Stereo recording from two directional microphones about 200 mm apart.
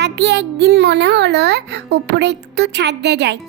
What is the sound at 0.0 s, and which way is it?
Speech, 60° right (ahead or behind).